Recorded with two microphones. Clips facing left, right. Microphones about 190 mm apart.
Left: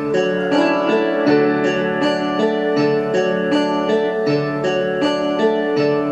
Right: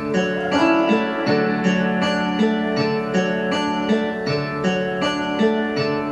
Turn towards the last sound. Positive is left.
turn(degrees=40)  # may be behind; listen again after turning